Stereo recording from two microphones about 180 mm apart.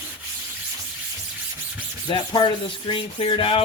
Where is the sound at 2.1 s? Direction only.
25° left (ahead or behind).